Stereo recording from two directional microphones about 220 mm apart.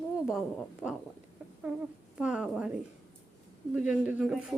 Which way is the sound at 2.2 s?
5° right (ahead or behind).